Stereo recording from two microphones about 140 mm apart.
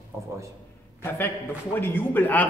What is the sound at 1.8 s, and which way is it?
Speech, 15° left (ahead or behind).